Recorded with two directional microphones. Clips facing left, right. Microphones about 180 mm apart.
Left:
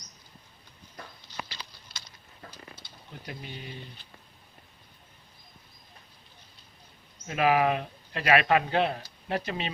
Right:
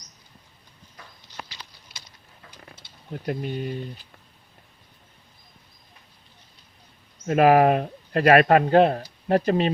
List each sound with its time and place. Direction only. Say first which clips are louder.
3.1 s speech: right 13 dB; 50° right (ahead or behind)
7.3 s speech: right 8 dB; 45° right (ahead or behind)